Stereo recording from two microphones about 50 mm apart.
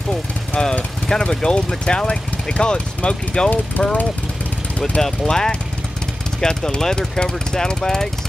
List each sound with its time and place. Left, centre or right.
0.7 s speech: centre
5.0 s speech: centre